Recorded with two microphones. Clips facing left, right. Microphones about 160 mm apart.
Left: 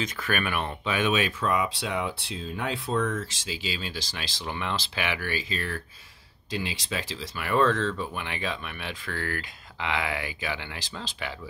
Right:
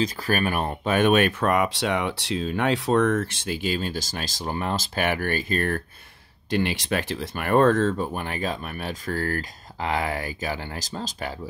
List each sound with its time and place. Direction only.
0.0 s speech: 35° right (ahead or behind); by 5.8 s 55° right (ahead or behind)
6.5 s speech: 70° right (ahead or behind); by 11.3 s 40° right (ahead or behind)